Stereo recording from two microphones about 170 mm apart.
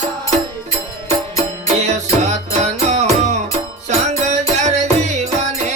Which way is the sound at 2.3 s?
40° right (ahead or behind).